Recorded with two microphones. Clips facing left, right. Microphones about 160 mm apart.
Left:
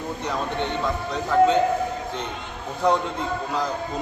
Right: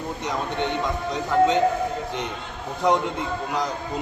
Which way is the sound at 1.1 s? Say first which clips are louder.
Left 1 dB; 15° right (ahead or behind).